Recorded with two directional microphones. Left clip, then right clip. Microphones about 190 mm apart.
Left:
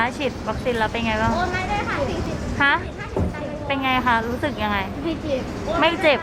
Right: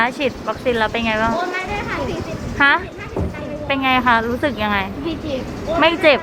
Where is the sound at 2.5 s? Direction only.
20° right (ahead or behind).